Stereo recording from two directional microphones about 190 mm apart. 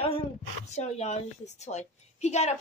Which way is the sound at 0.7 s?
35° left (ahead or behind).